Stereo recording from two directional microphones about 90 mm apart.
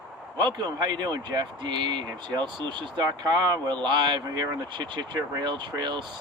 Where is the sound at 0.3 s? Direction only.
55° right (ahead or behind).